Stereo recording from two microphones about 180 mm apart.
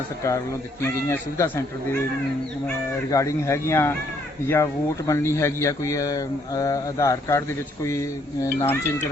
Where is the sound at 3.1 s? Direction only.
15° left (ahead or behind).